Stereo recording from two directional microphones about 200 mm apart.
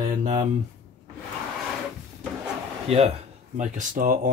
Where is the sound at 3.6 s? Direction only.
40° right (ahead or behind).